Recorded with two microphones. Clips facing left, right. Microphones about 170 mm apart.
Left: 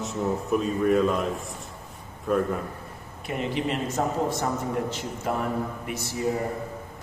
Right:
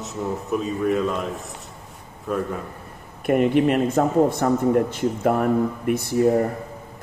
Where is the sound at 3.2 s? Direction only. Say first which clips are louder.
Right 11 dB; 55° right (ahead or behind).